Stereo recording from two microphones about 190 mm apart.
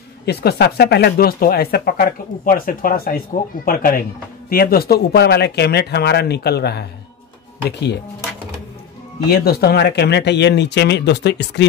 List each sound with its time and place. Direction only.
0.2 s speech: 60° left (ahead or behind)
9.3 s speech: 55° left (ahead or behind)